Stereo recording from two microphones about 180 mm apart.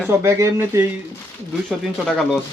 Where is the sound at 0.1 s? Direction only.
15° right (ahead or behind).